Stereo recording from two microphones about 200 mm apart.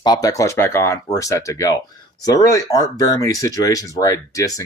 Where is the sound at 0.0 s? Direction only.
20° left (ahead or behind).